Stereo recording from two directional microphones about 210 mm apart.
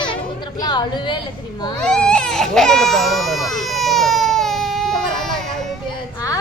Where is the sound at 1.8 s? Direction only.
5° left (ahead or behind).